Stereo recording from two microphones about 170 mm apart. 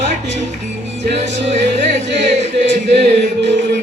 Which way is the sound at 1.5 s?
45° right (ahead or behind).